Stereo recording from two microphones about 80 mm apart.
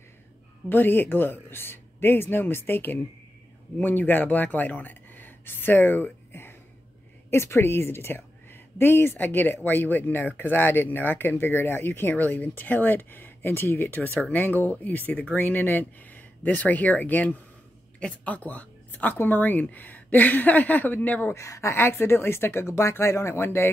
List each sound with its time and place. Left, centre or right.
0.7 s speech: left
21.4 s speech: left